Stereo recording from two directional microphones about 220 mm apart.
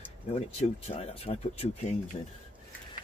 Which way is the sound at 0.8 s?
30° left (ahead or behind).